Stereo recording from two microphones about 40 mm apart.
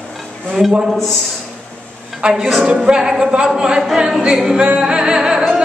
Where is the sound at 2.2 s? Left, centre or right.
Right.